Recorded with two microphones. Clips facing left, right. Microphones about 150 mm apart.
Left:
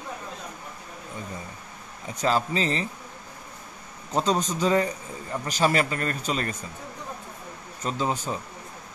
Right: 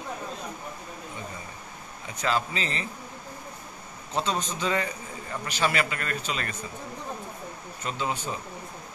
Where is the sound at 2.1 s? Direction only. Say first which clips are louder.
Left 4 dB; 40° left (ahead or behind).